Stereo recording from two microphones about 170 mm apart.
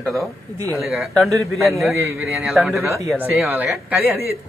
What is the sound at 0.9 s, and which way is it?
Speech, centre (ahead or behind).